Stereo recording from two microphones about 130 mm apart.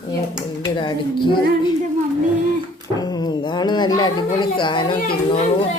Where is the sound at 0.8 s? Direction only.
40° left (ahead or behind).